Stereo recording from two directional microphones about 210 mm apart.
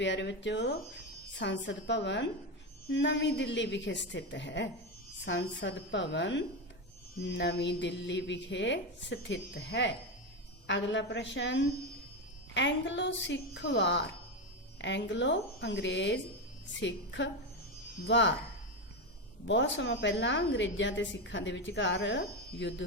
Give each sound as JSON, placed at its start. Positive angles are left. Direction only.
{"t": 0.0, "sound": "a woman's voice", "side_deg": 60}
{"t": 19.5, "sound": "a woman's voice", "side_deg": 60}